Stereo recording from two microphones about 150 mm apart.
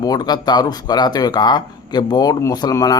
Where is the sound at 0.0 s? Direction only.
25° left (ahead or behind).